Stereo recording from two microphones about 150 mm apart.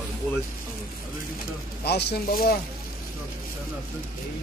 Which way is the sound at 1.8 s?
90° left.